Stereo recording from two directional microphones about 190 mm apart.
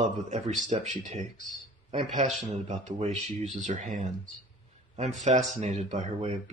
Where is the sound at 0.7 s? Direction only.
40° right (ahead or behind).